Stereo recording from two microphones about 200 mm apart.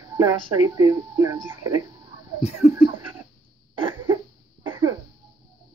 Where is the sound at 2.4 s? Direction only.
35° left (ahead or behind).